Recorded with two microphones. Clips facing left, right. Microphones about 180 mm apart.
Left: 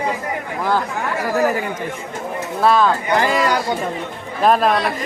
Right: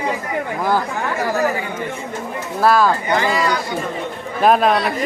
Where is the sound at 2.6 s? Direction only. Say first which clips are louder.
Even; 5° right (ahead or behind).